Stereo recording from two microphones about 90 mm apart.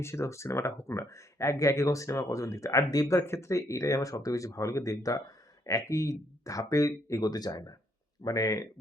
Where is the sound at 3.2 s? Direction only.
30° left (ahead or behind).